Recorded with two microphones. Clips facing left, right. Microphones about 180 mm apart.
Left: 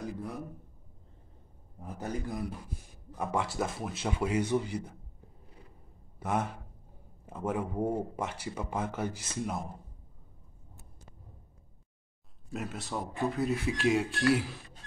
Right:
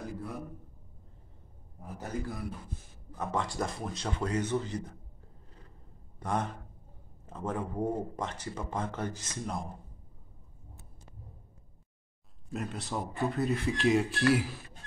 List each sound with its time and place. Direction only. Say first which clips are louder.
2.0 s a man's voice: left 2 dB; 15° left (ahead or behind)
6.1 s a man's voice: left 1 dB; 5° left (ahead or behind)
12.4 s speech: right 1 dB; 5° left (ahead or behind)